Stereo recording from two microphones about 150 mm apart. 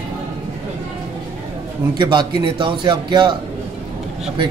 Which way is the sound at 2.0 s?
30° right (ahead or behind).